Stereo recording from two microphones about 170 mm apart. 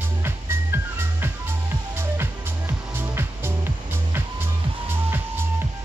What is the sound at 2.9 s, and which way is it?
Music, 15° right (ahead or behind).